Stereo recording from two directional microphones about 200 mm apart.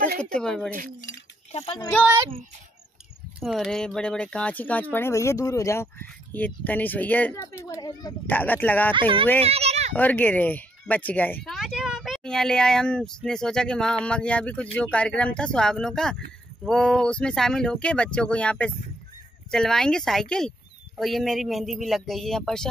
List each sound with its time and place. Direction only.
0.2 s speech: 5° left (ahead or behind)
1.5 s speech: 30° left (ahead or behind)
3.3 s speech: centre (ahead or behind)
7.6 s speech: 20° left (ahead or behind)
8.3 s speech: 10° left (ahead or behind)
9.4 s a sound: 30° right (ahead or behind)
9.9 s speech: 10° left (ahead or behind)